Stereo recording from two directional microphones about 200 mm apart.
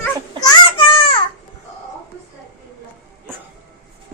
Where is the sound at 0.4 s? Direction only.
25° left (ahead or behind).